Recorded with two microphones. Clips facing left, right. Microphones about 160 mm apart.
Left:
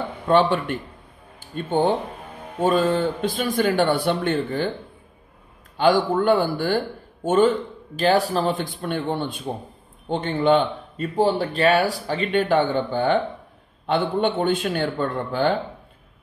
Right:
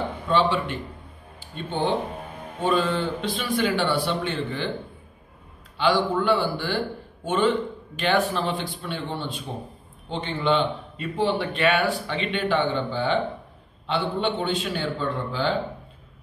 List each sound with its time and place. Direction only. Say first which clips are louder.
0.3 s speech: left 4 dB; 50° left (ahead or behind)
5.8 s speech: left 4 dB; 45° left (ahead or behind)